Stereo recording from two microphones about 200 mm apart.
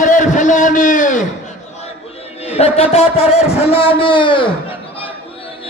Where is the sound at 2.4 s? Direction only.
30° left (ahead or behind).